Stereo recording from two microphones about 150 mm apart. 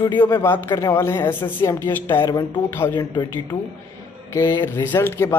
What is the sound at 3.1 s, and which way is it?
Speech, 30° left (ahead or behind).